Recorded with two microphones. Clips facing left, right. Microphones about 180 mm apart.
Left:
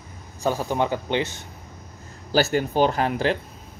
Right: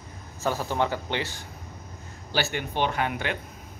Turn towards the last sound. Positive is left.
turn(degrees=35)  # may be behind; listen again after turning